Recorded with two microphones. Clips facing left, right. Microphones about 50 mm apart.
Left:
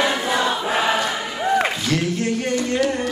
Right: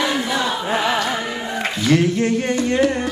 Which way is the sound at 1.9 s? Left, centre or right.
Right.